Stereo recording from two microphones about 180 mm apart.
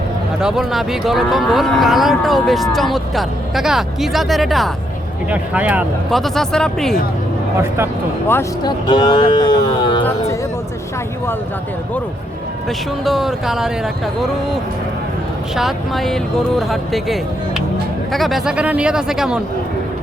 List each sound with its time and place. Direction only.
0.4 s speech: centre (ahead or behind)
8.3 s speech: 15° left (ahead or behind)
8.9 s speech: 25° left (ahead or behind)
13.1 s speech: centre (ahead or behind)
15.5 s speech: centre (ahead or behind)